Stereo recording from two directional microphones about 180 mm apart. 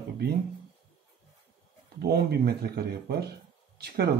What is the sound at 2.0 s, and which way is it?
Speech, 60° right (ahead or behind).